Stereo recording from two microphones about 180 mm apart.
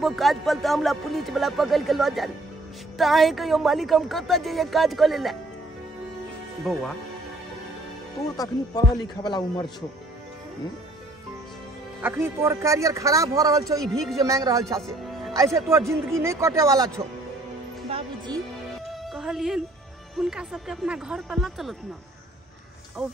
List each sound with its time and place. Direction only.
0.0 s speech: centre (ahead or behind)
6.6 s speech: centre (ahead or behind)
8.4 s a man's voice: 20° left (ahead or behind)
12.0 s a man's voice: 10° right (ahead or behind)
14.8 s music: centre (ahead or behind)
15.3 s a man's voice: 15° right (ahead or behind)
18.9 s music: centre (ahead or behind)
20.2 s speech: 5° right (ahead or behind)
23.0 s speech: 5° right (ahead or behind)